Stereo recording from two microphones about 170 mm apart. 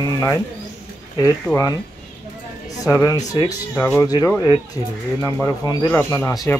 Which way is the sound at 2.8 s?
15° left (ahead or behind).